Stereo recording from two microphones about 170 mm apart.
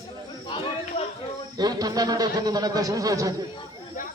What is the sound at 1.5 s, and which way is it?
Speech, 25° right (ahead or behind).